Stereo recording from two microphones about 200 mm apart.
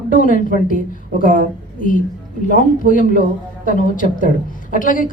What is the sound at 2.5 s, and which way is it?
A woman's voice, 40° left (ahead or behind).